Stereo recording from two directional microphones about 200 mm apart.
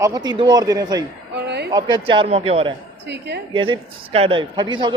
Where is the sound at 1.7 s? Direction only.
20° right (ahead or behind).